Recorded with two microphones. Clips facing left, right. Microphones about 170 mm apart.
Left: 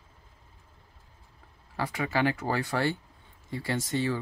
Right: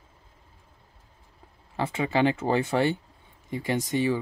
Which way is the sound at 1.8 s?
25° right (ahead or behind).